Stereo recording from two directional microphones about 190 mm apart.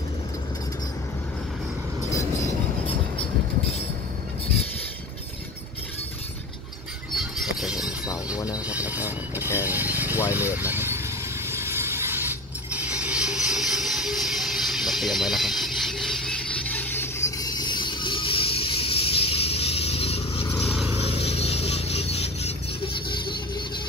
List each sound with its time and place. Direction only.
2.0 s vehicle: 15° left (ahead or behind)
7.2 s a sound: 5° right (ahead or behind)
8.6 s vehicle: 10° right (ahead or behind)
9.7 s a sound: 10° right (ahead or behind)
11.4 s mechanisms: 10° right (ahead or behind); by 20.7 s 30° left (ahead or behind)
21.1 s music: 30° left (ahead or behind)